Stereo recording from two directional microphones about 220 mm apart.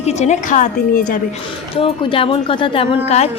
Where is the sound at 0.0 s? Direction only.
30° left (ahead or behind).